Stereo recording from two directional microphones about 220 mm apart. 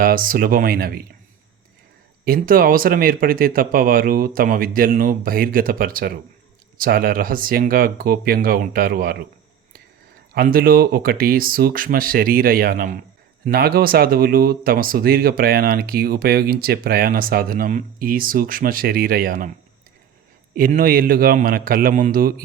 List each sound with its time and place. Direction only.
0.0 s speech: 40° right (ahead or behind)
2.2 s speech: 40° right (ahead or behind)
10.3 s speech: 40° right (ahead or behind)
20.6 s speech: 40° right (ahead or behind)